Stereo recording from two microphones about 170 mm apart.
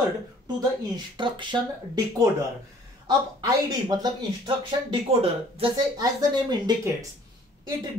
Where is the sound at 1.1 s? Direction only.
30° right (ahead or behind).